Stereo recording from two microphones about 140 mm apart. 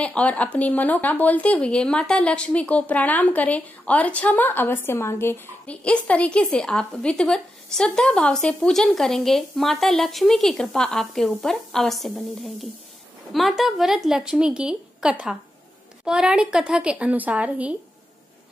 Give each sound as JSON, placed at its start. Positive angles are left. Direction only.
{"t": 0.0, "sound": "speech", "side_deg": 10}
{"t": 13.3, "sound": "a woman's voice", "side_deg": 0}